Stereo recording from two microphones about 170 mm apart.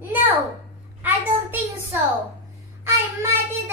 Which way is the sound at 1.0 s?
10° right (ahead or behind).